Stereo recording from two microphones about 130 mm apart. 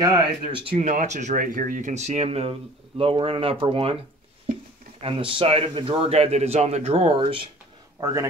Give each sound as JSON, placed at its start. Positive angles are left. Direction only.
{"t": 0.0, "sound": "speech", "side_deg": -35}
{"t": 0.7, "sound": "a man's voice", "side_deg": -65}
{"t": 5.0, "sound": "a man's voice", "side_deg": -40}
{"t": 8.0, "sound": "speech", "side_deg": -25}